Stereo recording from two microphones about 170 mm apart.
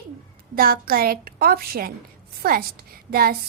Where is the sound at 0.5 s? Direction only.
60° right (ahead or behind).